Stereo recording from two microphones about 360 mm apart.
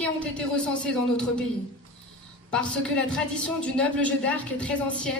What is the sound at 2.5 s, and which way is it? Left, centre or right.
A woman's voice, centre.